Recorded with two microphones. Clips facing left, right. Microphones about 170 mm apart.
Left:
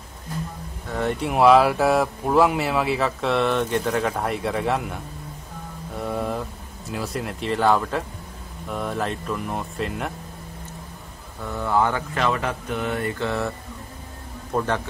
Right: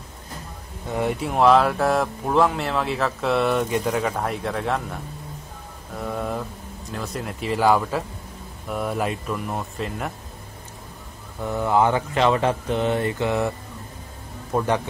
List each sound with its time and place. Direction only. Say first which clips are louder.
0.8 s speech: right 1 dB; 15° right (ahead or behind)
1.2 s speech: left 2 dB; 5° left (ahead or behind)
5.9 s mantra: left 1 dB; centre (ahead or behind)
6.9 s speech: left 2 dB; 5° left (ahead or behind)
11.4 s speech: right 2 dB; 15° right (ahead or behind)
14.5 s speech: right 1 dB; 10° right (ahead or behind)